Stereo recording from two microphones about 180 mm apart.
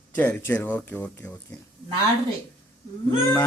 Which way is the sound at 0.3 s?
10° left (ahead or behind).